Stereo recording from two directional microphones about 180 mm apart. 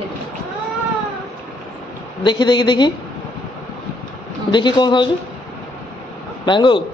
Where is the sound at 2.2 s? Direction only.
25° left (ahead or behind).